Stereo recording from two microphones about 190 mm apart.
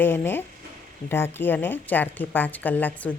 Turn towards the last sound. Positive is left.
turn(degrees=10)  # may be behind; listen again after turning